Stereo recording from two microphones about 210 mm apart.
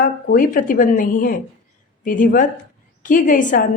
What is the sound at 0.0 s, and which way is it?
Speech, 40° left (ahead or behind).